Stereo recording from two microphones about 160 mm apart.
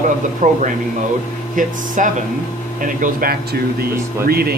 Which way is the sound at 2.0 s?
50° right (ahead or behind).